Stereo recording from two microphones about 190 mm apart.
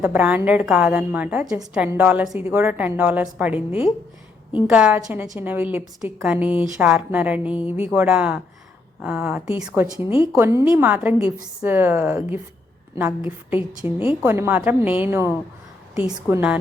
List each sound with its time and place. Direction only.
0.0 s a woman's voice: 10° right (ahead or behind)
4.6 s a woman's voice: 5° right (ahead or behind)
13.8 s a woman's voice: 30° left (ahead or behind)
14.2 s a woman's voice: 10° right (ahead or behind)